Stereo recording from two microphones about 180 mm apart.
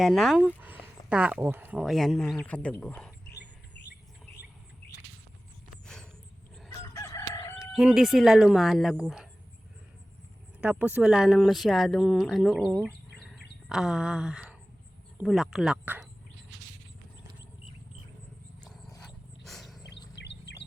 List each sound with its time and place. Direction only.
0.0 s speech: centre (ahead or behind)
5.8 s wild animals: 5° left (ahead or behind)
6.7 s chicken: 15° left (ahead or behind)
7.6 s speech: 5° right (ahead or behind)
10.6 s speech: 10° right (ahead or behind)
12.8 s bird: centre (ahead or behind)
13.7 s speech: 5° right (ahead or behind)
19.0 s dog: centre (ahead or behind)
20.1 s bird: 70° left (ahead or behind)